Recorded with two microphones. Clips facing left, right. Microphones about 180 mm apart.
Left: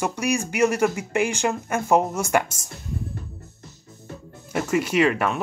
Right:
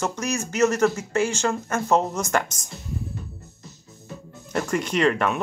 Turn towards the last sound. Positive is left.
turn(degrees=5)  # may be behind; listen again after turning